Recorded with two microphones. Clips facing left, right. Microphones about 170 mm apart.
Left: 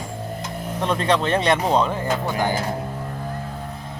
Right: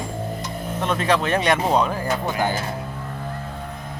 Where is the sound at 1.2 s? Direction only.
30° left (ahead or behind).